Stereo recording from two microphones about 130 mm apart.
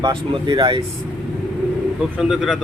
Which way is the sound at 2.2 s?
5° right (ahead or behind).